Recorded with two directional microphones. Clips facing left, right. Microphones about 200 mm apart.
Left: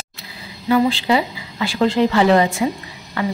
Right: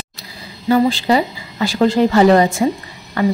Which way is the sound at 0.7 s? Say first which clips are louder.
Right 2 dB; 45° right (ahead or behind).